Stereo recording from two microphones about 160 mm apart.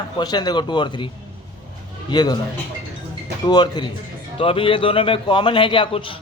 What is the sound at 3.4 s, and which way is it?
A man's voice, 25° left (ahead or behind).